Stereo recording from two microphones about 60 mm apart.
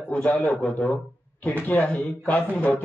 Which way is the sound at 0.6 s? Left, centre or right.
Centre.